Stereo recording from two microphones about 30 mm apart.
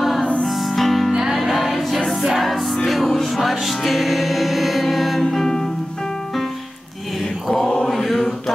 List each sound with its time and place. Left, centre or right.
0.5 s music: centre
5.3 s music: centre
7.4 s mantra: centre
8.1 s chant: centre